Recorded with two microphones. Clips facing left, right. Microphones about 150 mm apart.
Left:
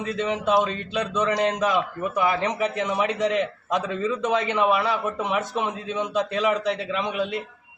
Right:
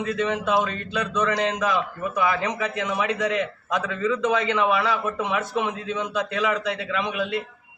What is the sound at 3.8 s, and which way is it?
Speech, 20° left (ahead or behind).